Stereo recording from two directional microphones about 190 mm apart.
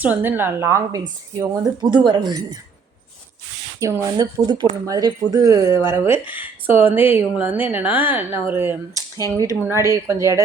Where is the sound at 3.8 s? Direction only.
20° right (ahead or behind).